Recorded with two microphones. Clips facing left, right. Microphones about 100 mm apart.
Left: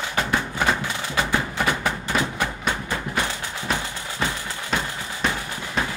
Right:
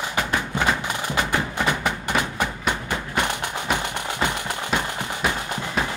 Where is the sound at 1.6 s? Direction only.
15° right (ahead or behind).